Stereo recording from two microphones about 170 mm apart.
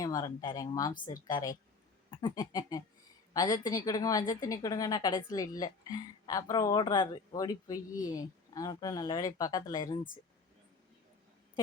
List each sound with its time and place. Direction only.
0.0 s a woman's voice: 20° left (ahead or behind)